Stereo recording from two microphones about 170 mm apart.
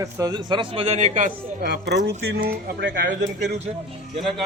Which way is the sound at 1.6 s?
75° right (ahead or behind).